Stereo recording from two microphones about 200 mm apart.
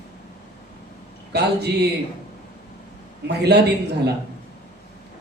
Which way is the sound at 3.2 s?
55° right (ahead or behind).